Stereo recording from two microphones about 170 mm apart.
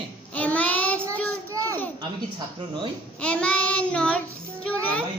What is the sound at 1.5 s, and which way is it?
Speech, 20° right (ahead or behind).